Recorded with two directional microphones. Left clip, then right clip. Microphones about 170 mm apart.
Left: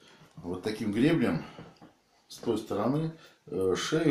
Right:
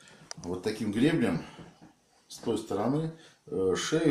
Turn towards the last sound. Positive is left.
turn(degrees=0)  # may be behind; listen again after turning